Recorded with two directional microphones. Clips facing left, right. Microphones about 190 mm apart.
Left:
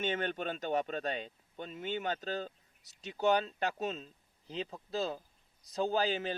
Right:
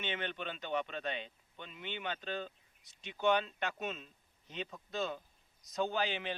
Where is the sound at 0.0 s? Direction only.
45° left (ahead or behind).